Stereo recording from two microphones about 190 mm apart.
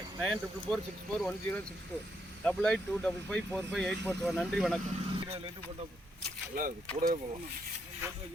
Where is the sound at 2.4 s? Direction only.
5° left (ahead or behind).